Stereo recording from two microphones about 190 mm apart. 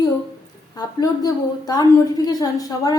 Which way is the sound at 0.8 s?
20° left (ahead or behind).